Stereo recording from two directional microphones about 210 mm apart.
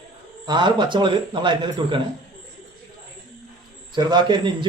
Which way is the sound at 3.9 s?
20° right (ahead or behind).